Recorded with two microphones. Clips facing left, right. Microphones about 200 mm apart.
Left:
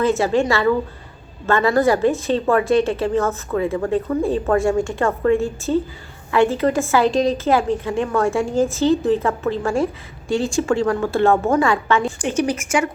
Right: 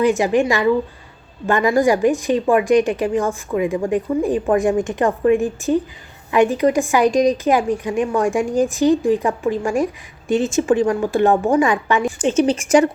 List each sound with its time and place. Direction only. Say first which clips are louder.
0.0 s a woman's voice: right 2 dB; 15° right (ahead or behind)
12.6 s speech: right 7 dB; 40° right (ahead or behind)